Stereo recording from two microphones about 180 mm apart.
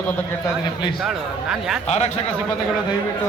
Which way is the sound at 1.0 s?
5° right (ahead or behind).